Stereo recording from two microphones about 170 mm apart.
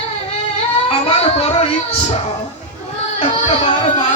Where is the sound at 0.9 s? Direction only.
35° left (ahead or behind).